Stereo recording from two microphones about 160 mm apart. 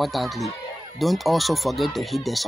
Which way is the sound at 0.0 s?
Centre (ahead or behind).